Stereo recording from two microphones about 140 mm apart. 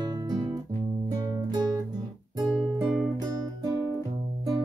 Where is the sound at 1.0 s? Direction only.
30° right (ahead or behind).